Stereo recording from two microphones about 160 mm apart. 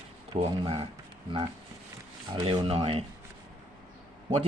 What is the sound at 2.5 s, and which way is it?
Speech, 35° right (ahead or behind).